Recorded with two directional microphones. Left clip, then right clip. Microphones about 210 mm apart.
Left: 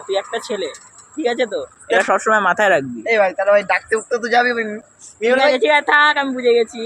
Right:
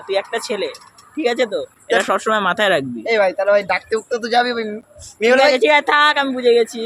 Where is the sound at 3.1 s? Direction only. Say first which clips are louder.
Left 1 dB; 20° right (ahead or behind).